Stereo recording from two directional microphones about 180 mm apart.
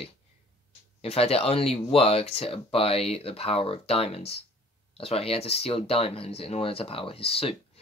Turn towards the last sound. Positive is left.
turn(degrees=30)  # may be behind; listen again after turning